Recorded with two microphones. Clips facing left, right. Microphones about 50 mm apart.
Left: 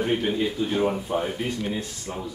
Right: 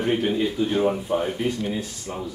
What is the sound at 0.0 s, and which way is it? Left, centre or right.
Speech, centre.